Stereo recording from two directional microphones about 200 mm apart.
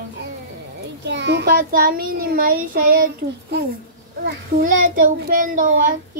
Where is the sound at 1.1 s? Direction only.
60° right (ahead or behind).